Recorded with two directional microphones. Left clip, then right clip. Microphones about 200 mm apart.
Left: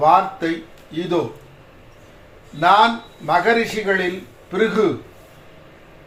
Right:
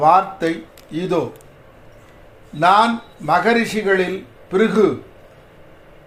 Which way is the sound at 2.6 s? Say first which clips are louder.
Even; 45° right (ahead or behind).